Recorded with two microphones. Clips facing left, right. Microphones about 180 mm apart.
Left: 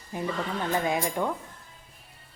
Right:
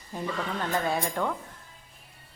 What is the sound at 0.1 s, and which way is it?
Speech, 15° left (ahead or behind).